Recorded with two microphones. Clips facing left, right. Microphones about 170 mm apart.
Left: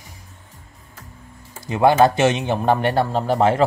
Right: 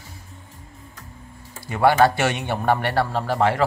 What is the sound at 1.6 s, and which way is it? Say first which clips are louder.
Speech: left 2 dB; 20° left (ahead or behind).